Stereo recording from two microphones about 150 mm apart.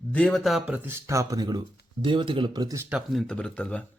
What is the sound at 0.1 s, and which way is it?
Speech, 5° left (ahead or behind).